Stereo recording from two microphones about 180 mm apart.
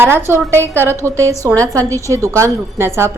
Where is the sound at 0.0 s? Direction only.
10° right (ahead or behind).